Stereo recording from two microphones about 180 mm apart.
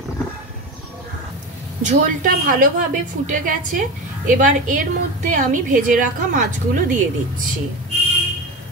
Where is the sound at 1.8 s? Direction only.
45° right (ahead or behind).